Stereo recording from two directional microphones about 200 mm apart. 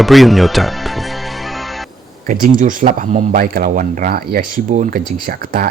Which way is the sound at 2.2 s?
45° right (ahead or behind).